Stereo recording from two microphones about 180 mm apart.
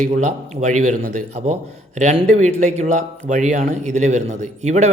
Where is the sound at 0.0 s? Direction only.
45° right (ahead or behind).